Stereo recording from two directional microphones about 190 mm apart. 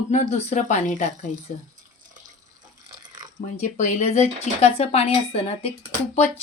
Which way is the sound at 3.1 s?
20° right (ahead or behind).